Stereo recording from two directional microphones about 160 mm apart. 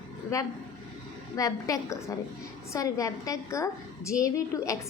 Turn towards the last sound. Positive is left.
turn(degrees=20)  # may be behind; listen again after turning